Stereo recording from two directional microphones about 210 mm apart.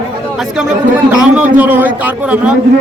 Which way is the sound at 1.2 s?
5° right (ahead or behind).